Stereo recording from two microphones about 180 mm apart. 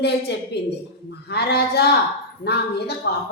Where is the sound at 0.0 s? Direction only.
65° left (ahead or behind).